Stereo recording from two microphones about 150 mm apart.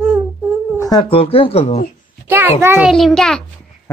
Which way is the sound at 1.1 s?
40° left (ahead or behind).